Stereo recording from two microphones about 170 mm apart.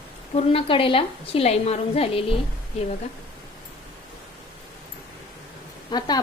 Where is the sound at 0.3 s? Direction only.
35° left (ahead or behind).